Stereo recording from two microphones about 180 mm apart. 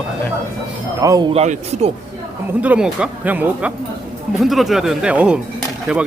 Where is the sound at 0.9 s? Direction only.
20° right (ahead or behind).